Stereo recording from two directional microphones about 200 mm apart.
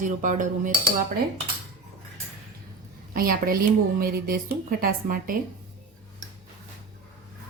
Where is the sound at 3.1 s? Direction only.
45° right (ahead or behind).